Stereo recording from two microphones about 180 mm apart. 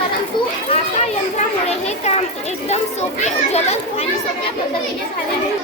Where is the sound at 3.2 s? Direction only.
35° left (ahead or behind).